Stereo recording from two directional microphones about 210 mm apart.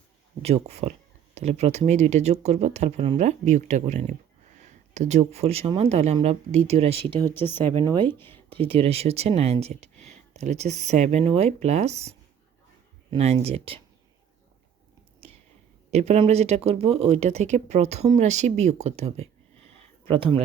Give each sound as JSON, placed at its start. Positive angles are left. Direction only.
{"t": 0.4, "sound": "speech", "side_deg": -30}
{"t": 7.3, "sound": "speech", "side_deg": 10}
{"t": 8.5, "sound": "speech", "side_deg": -25}
{"t": 15.9, "sound": "speech", "side_deg": -30}